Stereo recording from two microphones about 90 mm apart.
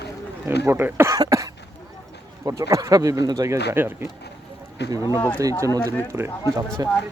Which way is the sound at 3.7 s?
25° right (ahead or behind).